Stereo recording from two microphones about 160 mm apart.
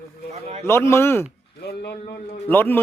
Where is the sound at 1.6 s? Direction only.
90° left.